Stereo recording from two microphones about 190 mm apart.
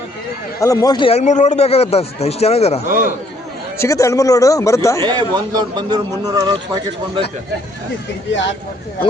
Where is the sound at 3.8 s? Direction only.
15° left (ahead or behind).